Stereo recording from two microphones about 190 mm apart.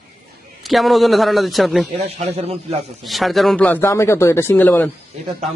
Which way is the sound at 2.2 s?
35° right (ahead or behind).